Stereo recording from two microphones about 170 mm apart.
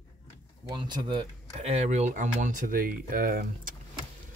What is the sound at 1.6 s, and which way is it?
Speech, 40° right (ahead or behind).